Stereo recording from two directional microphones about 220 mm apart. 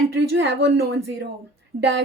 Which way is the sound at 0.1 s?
50° right (ahead or behind).